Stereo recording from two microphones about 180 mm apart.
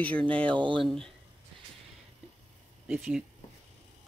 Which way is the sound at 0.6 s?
25° right (ahead or behind).